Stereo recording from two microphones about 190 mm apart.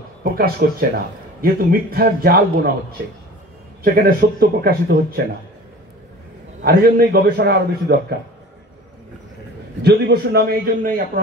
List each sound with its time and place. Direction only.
0.2 s speech: 50° right (ahead or behind)
3.8 s speech: 50° right (ahead or behind)
6.6 s a man's voice: 55° right (ahead or behind)
9.8 s a man's voice: 60° right (ahead or behind)